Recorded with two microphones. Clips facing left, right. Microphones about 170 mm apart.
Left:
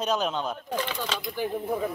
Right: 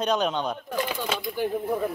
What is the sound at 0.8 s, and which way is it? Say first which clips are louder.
Speech: right 2 dB; 10° right (ahead or behind).